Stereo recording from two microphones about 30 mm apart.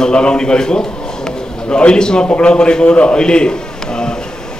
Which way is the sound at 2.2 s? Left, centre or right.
Left.